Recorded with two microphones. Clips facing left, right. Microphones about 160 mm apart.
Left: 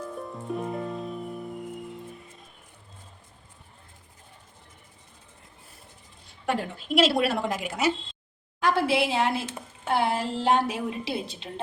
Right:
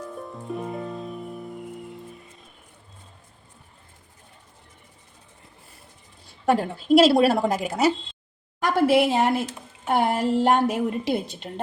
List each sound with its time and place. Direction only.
0.0 s music: centre (ahead or behind)
6.4 s a woman's voice: 40° right (ahead or behind)